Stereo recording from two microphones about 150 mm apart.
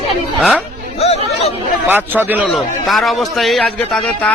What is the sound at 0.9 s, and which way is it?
Speech, 45° left (ahead or behind).